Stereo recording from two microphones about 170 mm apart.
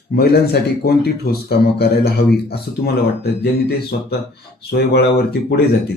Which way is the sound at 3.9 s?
60° left (ahead or behind).